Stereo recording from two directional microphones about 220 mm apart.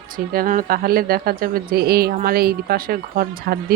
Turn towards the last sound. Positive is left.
turn(degrees=-40)  # may be behind; listen again after turning